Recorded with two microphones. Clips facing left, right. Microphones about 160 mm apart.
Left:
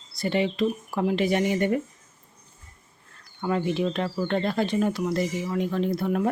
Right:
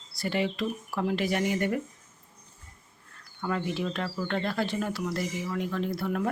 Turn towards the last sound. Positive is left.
turn(degrees=20)  # may be behind; listen again after turning